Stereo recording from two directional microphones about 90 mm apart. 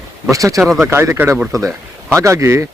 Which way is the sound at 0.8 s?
30° right (ahead or behind).